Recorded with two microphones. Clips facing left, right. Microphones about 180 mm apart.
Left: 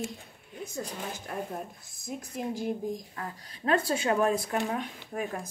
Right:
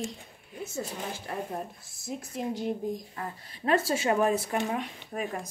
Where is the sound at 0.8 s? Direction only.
5° right (ahead or behind).